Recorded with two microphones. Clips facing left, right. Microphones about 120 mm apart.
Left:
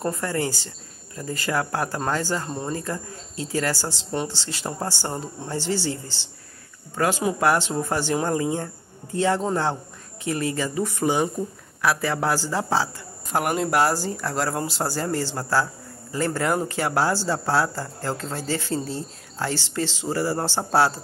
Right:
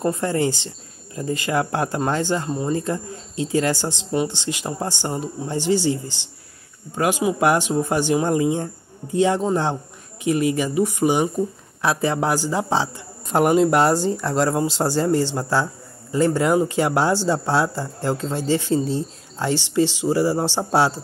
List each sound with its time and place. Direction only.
0.0 s speech: 20° right (ahead or behind)